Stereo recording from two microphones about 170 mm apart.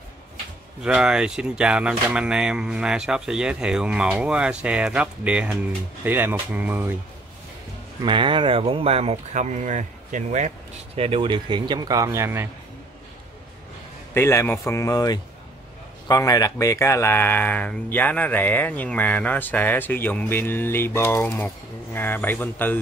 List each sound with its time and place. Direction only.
0.8 s speech: 5° right (ahead or behind)
8.0 s speech: 30° right (ahead or behind); by 10.5 s 45° right (ahead or behind)
11.0 s speech: 35° right (ahead or behind); by 12.4 s 15° right (ahead or behind)
14.1 s speech: 15° left (ahead or behind)